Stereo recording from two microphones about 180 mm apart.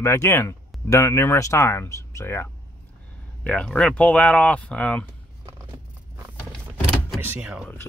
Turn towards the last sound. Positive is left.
turn(degrees=-5)  # may be behind; listen again after turning